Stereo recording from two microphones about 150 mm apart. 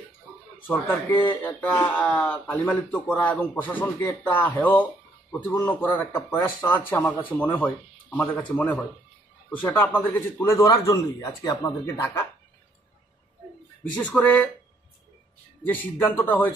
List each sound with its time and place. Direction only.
0.7 s speech: 10° left (ahead or behind)
13.9 s speech: 10° left (ahead or behind)
15.6 s speech: 10° left (ahead or behind)